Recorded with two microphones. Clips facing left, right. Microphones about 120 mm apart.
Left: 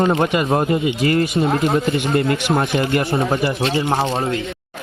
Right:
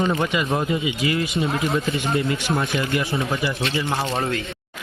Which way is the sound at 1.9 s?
60° left (ahead or behind).